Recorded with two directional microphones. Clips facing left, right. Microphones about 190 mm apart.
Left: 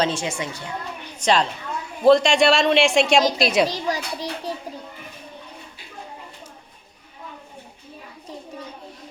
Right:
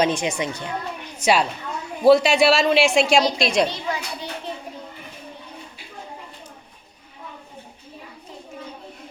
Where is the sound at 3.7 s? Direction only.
40° left (ahead or behind).